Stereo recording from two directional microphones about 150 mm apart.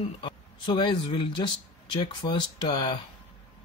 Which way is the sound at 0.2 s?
30° left (ahead or behind).